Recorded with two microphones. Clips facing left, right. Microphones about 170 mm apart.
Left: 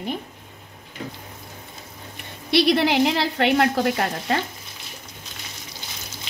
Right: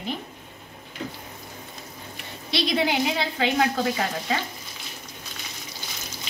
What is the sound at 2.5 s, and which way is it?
A woman's voice, 70° left (ahead or behind).